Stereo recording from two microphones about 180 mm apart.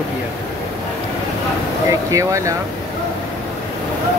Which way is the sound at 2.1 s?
15° right (ahead or behind).